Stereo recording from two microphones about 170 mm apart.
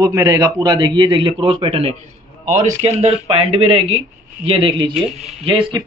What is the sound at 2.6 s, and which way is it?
A man's voice, 45° right (ahead or behind).